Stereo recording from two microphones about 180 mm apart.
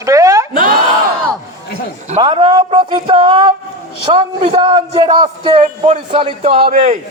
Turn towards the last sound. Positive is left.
turn(degrees=-35)  # may be behind; listen again after turning